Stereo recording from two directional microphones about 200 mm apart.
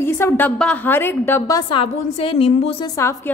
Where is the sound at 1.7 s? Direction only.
25° left (ahead or behind).